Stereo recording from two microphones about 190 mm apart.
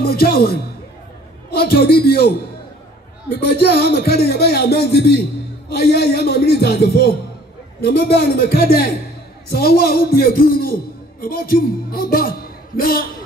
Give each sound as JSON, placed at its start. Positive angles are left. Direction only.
{"t": 0.0, "sound": "a man's voice", "side_deg": 55}